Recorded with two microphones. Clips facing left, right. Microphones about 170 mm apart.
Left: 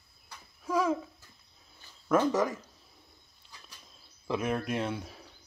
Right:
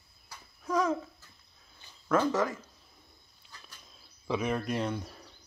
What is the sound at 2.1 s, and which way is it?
Speech, 15° left (ahead or behind).